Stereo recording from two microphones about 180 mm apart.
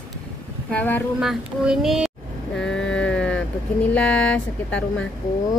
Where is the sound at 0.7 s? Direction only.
10° left (ahead or behind).